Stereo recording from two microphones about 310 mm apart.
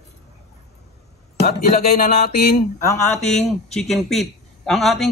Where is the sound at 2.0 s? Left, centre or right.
Left.